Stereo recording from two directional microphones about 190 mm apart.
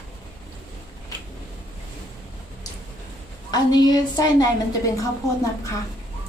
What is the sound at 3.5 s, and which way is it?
A woman's voice, 20° left (ahead or behind).